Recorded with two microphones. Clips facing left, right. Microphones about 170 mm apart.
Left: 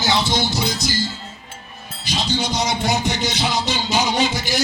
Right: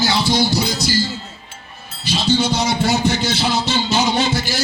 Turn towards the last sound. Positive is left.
turn(degrees=15)  # may be behind; listen again after turning